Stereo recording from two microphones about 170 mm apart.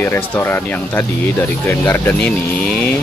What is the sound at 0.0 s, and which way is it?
Speech, 15° left (ahead or behind).